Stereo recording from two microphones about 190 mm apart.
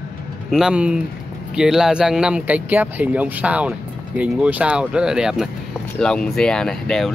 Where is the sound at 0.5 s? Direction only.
5° right (ahead or behind).